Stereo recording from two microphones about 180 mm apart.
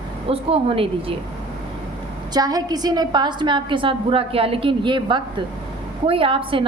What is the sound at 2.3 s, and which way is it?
A woman's voice, 20° right (ahead or behind).